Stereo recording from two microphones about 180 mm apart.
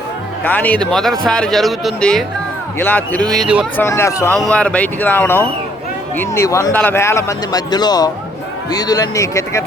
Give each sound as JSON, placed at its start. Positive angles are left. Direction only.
{"t": 0.4, "sound": "speech", "side_deg": 10}
{"t": 3.8, "sound": "a man's voice", "side_deg": 15}